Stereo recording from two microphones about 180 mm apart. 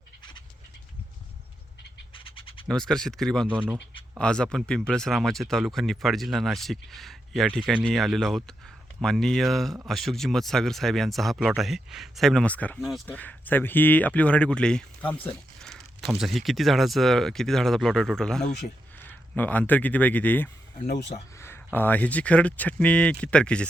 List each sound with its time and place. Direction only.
2.1 s bird: 30° left (ahead or behind)
2.6 s speech: 5° left (ahead or behind)
20.7 s speech: 40° left (ahead or behind)
21.3 s speech: 15° left (ahead or behind)